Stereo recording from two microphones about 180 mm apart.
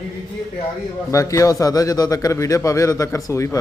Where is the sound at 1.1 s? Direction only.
15° left (ahead or behind).